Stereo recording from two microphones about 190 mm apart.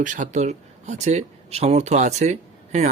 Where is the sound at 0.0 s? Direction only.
40° right (ahead or behind).